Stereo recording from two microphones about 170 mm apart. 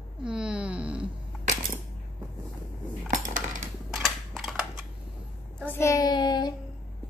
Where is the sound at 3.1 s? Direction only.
45° right (ahead or behind).